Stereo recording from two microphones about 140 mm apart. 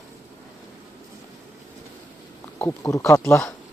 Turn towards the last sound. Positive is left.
turn(degrees=20)  # may be behind; listen again after turning